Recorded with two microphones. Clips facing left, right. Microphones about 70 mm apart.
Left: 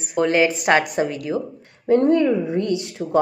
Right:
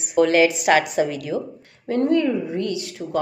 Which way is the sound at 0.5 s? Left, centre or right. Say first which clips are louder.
Even; left.